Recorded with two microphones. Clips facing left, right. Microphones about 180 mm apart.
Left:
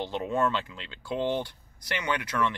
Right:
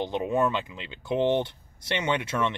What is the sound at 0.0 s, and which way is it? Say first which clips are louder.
Speech: right 2 dB; 15° right (ahead or behind).